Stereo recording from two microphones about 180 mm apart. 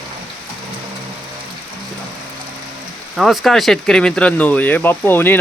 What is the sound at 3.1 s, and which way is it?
Speech, centre (ahead or behind).